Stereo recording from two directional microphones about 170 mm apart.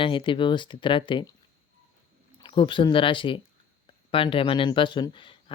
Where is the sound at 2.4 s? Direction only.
30° left (ahead or behind).